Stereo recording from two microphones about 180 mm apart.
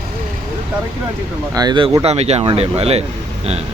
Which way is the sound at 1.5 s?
25° right (ahead or behind).